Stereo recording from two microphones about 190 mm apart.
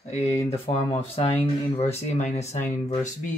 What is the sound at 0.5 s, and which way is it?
Speech, 30° left (ahead or behind).